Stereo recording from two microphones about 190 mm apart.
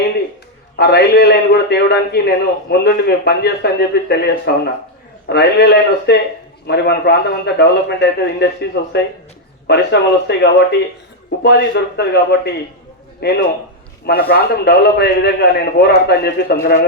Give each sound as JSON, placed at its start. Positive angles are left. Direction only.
{"t": 0.8, "sound": "a man's voice", "side_deg": 60}